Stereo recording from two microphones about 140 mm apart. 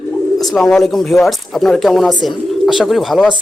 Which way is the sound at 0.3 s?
Centre (ahead or behind).